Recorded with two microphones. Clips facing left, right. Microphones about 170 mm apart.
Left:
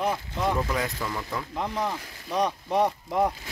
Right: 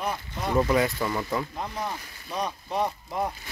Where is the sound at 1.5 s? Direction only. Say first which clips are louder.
Left 3 dB; 75° left (ahead or behind).